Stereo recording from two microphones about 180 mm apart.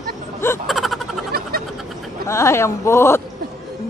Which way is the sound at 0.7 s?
Centre (ahead or behind).